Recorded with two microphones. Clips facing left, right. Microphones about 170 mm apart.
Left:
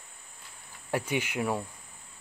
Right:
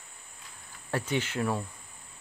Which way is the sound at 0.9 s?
10° left (ahead or behind).